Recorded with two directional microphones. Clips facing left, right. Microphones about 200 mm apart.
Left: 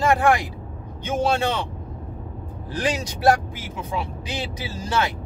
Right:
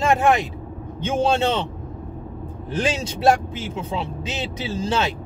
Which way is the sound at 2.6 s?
25° right (ahead or behind).